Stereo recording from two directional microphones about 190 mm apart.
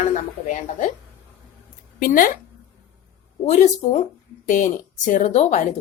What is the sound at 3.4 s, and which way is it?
Speech, 40° left (ahead or behind).